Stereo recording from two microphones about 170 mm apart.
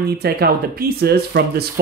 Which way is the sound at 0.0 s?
65° right (ahead or behind).